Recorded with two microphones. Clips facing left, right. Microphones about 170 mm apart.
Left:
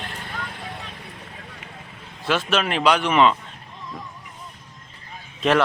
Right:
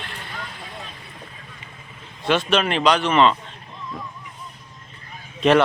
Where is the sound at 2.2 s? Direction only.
5° left (ahead or behind).